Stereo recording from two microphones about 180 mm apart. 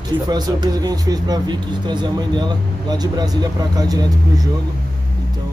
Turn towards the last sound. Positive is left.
turn(degrees=-20)  # may be behind; listen again after turning